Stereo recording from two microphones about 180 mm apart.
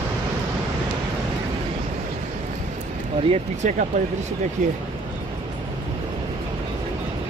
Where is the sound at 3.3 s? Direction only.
45° right (ahead or behind).